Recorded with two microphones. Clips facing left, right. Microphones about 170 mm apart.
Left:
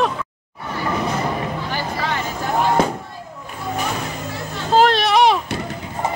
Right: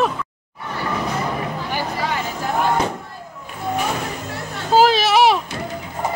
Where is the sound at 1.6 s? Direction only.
10° right (ahead or behind).